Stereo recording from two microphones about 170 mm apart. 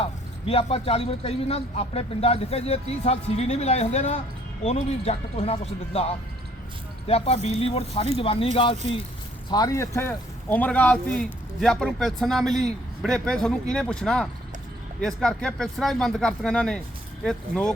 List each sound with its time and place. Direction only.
0.0 s speech: 35° left (ahead or behind)
9.5 s speech: 20° left (ahead or behind); by 17.7 s 5° left (ahead or behind)